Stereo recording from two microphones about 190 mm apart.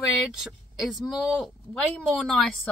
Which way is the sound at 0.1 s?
Centre (ahead or behind).